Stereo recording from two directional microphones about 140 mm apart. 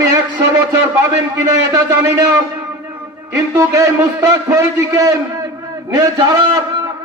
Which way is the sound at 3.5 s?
20° right (ahead or behind).